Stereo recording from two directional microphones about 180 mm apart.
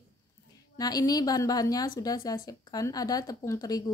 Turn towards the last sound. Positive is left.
turn(degrees=20)  # may be behind; listen again after turning